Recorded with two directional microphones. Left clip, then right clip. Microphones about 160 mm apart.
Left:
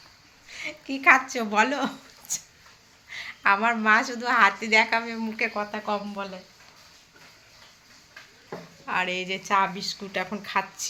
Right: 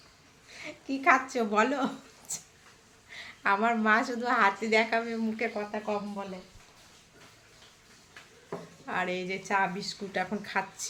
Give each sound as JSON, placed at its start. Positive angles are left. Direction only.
{"t": 0.4, "sound": "a woman's voice", "side_deg": -5}
{"t": 8.9, "sound": "a woman's voice", "side_deg": -15}